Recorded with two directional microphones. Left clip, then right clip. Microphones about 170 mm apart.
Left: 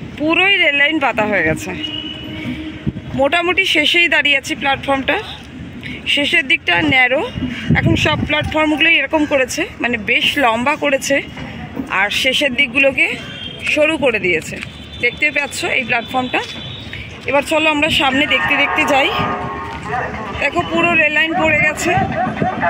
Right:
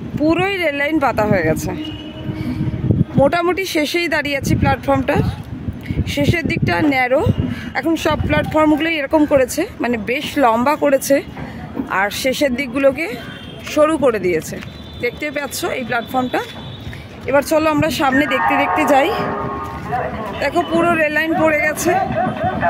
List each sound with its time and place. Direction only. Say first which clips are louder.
0.3 s speech: left 6 dB; 20° right (ahead or behind)
3.2 s speech: left 1 dB; 20° right (ahead or behind)
6.3 s speech: left 5 dB; 25° right (ahead or behind)
20.3 s speech: even; 20° right (ahead or behind)